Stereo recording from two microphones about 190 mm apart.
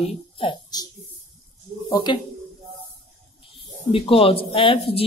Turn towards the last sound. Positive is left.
turn(degrees=30)  # may be behind; listen again after turning